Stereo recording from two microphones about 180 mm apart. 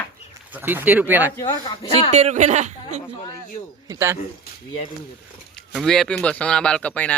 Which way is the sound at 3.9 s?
15° right (ahead or behind).